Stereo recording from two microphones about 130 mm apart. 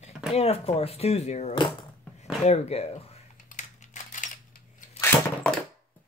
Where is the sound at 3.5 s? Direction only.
75° left (ahead or behind).